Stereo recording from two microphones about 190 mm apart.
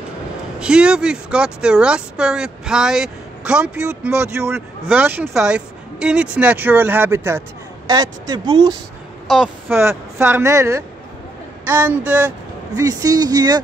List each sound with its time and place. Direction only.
0.6 s speech: 5° right (ahead or behind)
12.7 s speech: 20° right (ahead or behind)